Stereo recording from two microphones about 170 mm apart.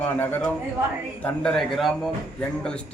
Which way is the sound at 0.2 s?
10° left (ahead or behind).